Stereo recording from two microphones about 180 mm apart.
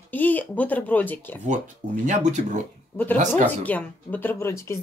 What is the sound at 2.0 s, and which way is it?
Speech, 45° right (ahead or behind).